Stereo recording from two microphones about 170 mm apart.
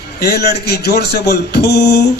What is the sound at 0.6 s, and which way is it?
A man's voice, 70° left (ahead or behind).